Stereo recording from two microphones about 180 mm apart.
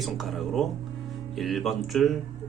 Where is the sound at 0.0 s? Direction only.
Centre (ahead or behind).